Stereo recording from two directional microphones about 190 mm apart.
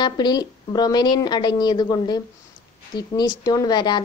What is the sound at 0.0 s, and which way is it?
A woman's voice, 20° left (ahead or behind).